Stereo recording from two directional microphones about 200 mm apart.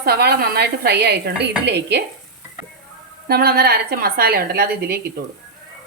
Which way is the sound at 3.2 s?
50° right (ahead or behind).